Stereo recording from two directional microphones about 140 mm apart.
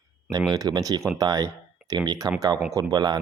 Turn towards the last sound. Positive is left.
turn(degrees=-30)  # may be behind; listen again after turning